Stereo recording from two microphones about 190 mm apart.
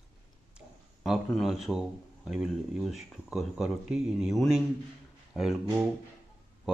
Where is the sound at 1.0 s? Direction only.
Centre (ahead or behind).